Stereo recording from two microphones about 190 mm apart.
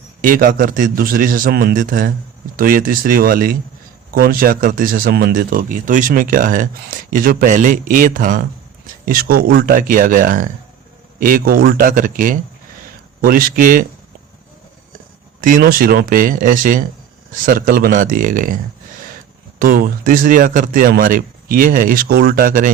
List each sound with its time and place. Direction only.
0.2 s speech: 45° right (ahead or behind)
15.4 s speech: 45° right (ahead or behind)